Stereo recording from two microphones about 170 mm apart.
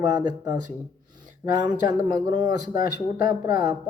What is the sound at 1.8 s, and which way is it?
Speech, 20° right (ahead or behind).